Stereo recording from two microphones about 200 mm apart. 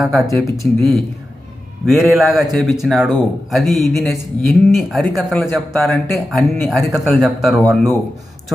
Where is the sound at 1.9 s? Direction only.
Centre (ahead or behind).